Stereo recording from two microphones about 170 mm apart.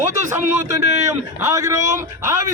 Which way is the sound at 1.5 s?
20° right (ahead or behind).